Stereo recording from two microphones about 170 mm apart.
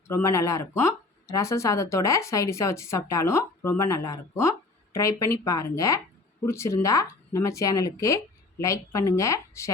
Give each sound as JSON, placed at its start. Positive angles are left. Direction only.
{"t": 0.1, "sound": "speech", "side_deg": 15}